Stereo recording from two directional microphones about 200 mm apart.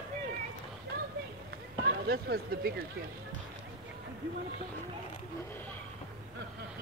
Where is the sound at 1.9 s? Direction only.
50° right (ahead or behind).